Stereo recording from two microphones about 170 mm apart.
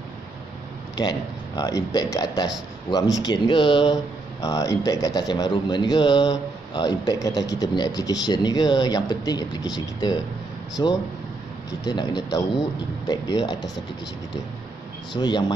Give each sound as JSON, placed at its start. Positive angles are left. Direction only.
{"t": 0.9, "sound": "speech", "side_deg": 25}
{"t": 15.1, "sound": "speech", "side_deg": 25}